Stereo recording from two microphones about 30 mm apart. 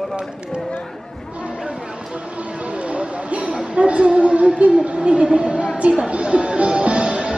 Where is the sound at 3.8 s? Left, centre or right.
Right.